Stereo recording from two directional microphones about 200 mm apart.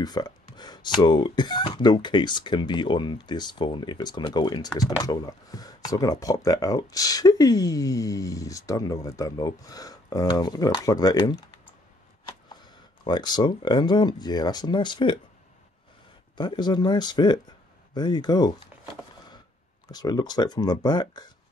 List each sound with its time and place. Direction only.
0.0 s speech: 20° left (ahead or behind)
12.6 s speech: 20° left (ahead or behind)
16.3 s speech: 20° left (ahead or behind)
19.9 s speech: 20° left (ahead or behind)